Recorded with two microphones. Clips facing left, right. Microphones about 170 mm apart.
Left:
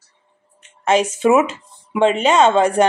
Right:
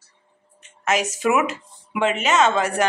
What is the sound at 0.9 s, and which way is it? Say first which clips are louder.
A woman's voice: left 6 dB; 30° left (ahead or behind).